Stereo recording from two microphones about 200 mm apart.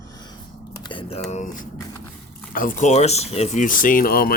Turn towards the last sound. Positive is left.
turn(degrees=50)  # may be behind; listen again after turning